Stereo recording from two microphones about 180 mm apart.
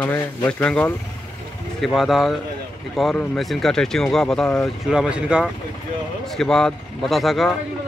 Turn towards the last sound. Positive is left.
turn(degrees=0)  # may be behind; listen again after turning